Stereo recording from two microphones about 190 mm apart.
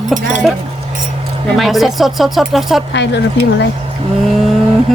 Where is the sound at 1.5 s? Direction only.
Centre (ahead or behind).